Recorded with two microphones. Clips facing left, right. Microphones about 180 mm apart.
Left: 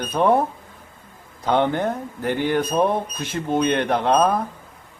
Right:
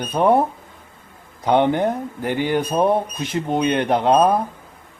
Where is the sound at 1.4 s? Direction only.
15° right (ahead or behind).